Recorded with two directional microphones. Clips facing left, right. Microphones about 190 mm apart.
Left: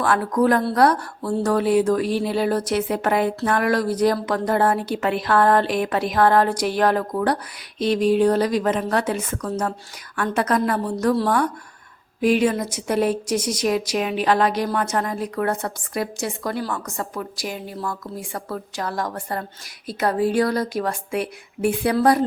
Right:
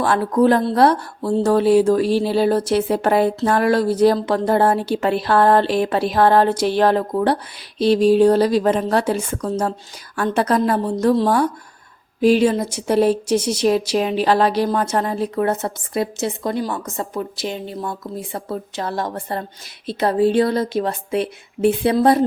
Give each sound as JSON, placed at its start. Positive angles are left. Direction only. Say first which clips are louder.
{"t": 0.0, "sound": "a woman's voice", "louder": "right 3 dB", "side_deg": -30}